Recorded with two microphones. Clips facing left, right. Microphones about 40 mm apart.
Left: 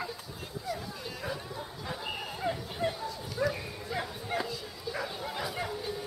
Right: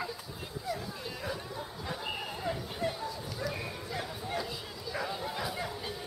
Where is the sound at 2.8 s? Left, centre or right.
Left.